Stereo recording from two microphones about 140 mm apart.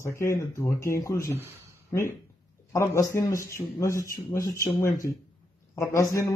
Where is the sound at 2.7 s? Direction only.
20° left (ahead or behind).